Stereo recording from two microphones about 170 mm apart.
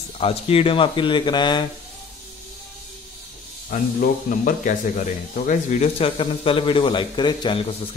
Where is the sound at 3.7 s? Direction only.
50° left (ahead or behind).